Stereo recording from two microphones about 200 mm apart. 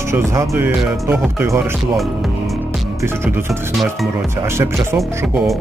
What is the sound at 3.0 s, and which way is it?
Speech, 10° right (ahead or behind).